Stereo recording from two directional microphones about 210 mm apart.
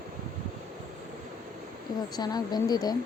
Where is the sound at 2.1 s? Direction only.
20° left (ahead or behind).